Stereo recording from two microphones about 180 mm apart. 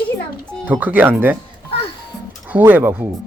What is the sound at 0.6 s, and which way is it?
Speech, 10° right (ahead or behind).